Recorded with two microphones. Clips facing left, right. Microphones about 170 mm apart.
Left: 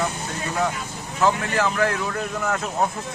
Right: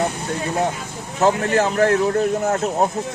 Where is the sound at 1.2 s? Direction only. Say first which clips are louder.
Right 4 dB; 45° right (ahead or behind).